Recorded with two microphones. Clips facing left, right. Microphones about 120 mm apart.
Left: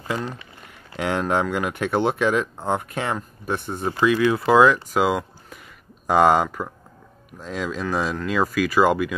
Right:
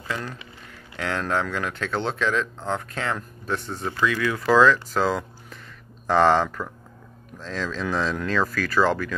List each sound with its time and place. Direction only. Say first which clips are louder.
0.1 s speech: left 4 dB; 20° left (ahead or behind)